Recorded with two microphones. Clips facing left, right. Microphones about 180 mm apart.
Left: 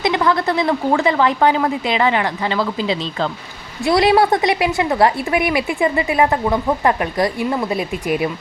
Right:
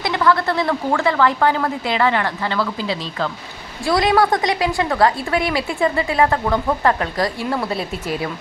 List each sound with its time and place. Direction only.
0.0 s a woman's voice: 20° left (ahead or behind)